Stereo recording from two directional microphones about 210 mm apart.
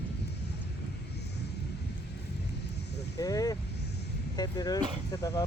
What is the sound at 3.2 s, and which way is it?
Speech, 15° left (ahead or behind).